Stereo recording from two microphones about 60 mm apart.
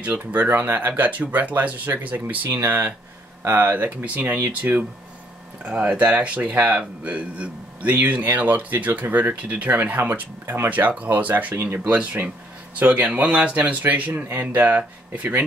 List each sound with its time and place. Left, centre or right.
0.0 s speech: right
10.4 s speech: right
10.7 s speech: right
11.5 s speech: right
11.8 s speech: right